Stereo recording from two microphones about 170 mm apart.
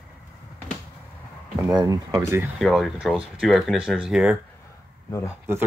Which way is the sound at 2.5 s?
Centre (ahead or behind).